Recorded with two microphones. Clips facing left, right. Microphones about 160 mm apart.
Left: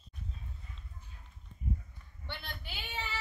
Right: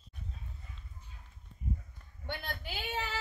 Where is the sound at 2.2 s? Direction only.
45° right (ahead or behind).